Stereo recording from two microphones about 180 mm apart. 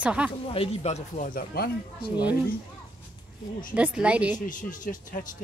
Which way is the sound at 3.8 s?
5° right (ahead or behind).